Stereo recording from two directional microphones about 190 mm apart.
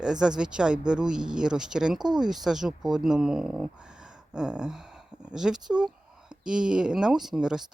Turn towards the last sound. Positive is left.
turn(degrees=-5)  # may be behind; listen again after turning